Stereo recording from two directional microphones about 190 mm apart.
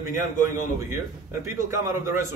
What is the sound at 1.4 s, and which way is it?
Speech, 15° right (ahead or behind).